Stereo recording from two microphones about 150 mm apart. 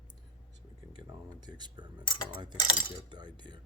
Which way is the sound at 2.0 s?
30° left (ahead or behind).